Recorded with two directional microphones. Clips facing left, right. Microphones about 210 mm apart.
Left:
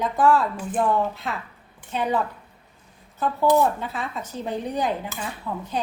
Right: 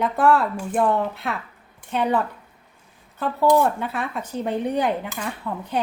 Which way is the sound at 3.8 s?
60° right (ahead or behind).